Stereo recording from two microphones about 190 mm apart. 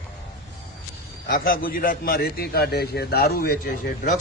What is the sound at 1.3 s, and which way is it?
A man's voice, 50° left (ahead or behind).